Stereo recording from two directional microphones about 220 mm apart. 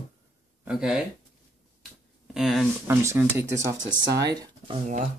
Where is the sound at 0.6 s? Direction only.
5° right (ahead or behind).